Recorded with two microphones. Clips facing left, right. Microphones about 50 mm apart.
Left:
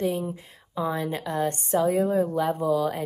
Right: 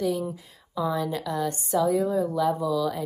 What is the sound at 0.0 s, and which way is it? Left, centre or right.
A woman's voice, left.